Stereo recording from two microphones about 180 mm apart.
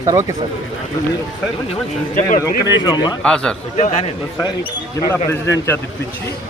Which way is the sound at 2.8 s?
20° left (ahead or behind).